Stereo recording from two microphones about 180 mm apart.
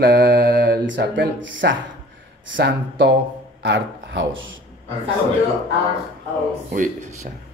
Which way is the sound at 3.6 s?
85° right.